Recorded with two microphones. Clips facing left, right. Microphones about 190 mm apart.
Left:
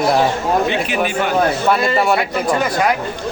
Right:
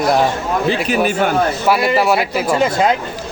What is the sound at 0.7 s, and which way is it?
Speech, 40° right (ahead or behind).